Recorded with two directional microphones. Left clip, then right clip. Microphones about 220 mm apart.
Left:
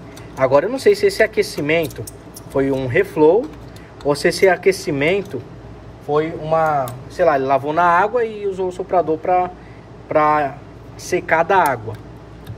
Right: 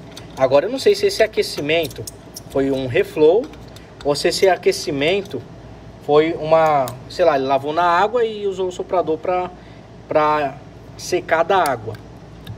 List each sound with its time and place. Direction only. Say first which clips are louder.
0.4 s speech: even; 5° right (ahead or behind)
6.4 s speech: right 2 dB; 25° right (ahead or behind)
6.9 s speech: even; 5° right (ahead or behind)